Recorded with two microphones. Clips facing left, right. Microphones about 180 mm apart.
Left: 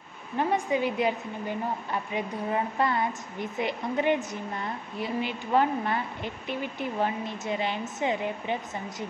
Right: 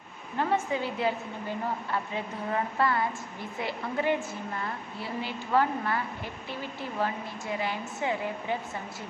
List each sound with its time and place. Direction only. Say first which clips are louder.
0.4 s a woman's voice: left 2 dB; 15° left (ahead or behind)